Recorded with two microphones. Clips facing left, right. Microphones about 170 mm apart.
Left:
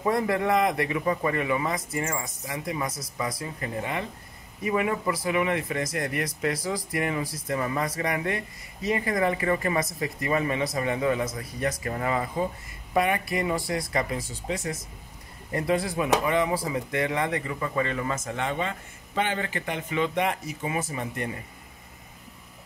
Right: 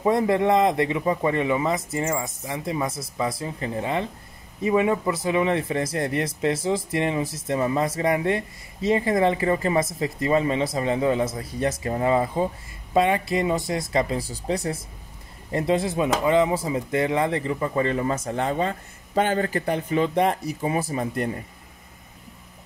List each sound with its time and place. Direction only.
0.0 s speech: 20° right (ahead or behind)
15.5 s speech: 25° right (ahead or behind)